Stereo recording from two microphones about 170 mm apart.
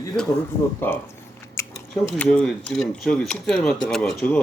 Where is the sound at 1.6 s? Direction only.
15° left (ahead or behind).